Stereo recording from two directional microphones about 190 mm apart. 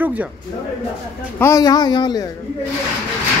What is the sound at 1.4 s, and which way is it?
Speech, 15° left (ahead or behind).